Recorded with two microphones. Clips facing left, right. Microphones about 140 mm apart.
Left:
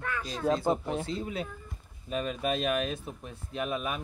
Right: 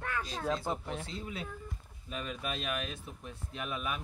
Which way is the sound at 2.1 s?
40° left (ahead or behind).